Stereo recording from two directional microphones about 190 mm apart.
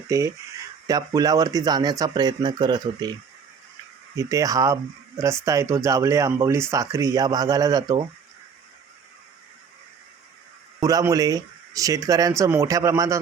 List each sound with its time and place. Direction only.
0.1 s speech: 15° right (ahead or behind)
4.2 s speech: 15° right (ahead or behind)
10.8 s speech: 20° right (ahead or behind)